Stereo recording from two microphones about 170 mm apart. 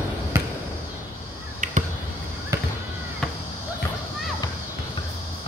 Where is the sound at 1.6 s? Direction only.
45° right (ahead or behind).